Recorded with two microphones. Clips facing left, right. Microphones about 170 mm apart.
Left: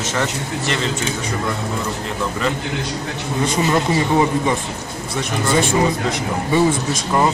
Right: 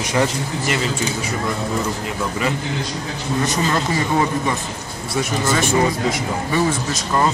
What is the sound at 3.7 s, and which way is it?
Speech, 20° left (ahead or behind).